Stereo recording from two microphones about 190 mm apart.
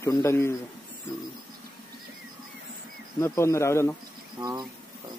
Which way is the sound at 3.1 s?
15° left (ahead or behind).